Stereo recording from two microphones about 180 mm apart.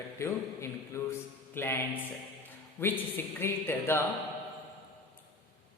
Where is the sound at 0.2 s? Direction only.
15° left (ahead or behind).